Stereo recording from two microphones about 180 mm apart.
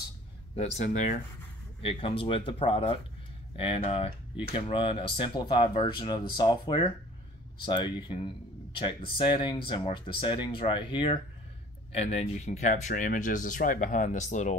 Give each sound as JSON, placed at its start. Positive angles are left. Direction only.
{"t": 0.6, "sound": "speech", "side_deg": 40}